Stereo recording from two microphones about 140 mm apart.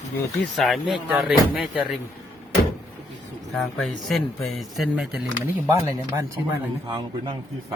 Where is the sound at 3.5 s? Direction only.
Centre (ahead or behind).